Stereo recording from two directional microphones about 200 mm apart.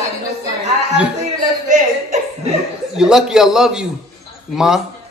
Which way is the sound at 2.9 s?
5° right (ahead or behind).